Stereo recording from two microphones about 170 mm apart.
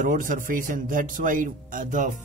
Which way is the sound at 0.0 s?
50° right (ahead or behind).